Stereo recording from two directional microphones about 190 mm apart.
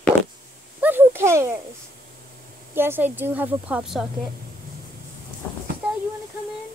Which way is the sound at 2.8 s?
10° right (ahead or behind).